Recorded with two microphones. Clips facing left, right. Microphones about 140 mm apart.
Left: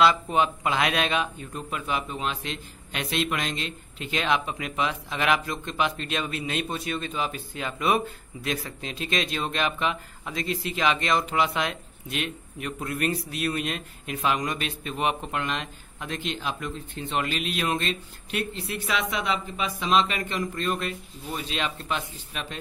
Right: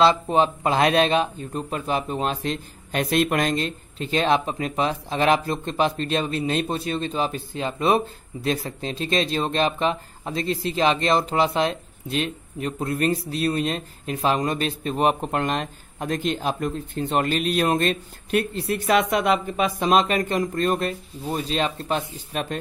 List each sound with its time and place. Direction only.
0.0 s speech: 30° right (ahead or behind)